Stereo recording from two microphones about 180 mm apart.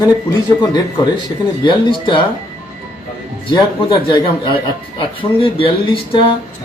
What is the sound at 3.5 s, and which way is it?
Speech, 25° left (ahead or behind).